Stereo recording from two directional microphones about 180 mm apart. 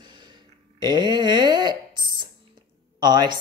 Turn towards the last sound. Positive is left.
turn(degrees=-25)  # may be behind; listen again after turning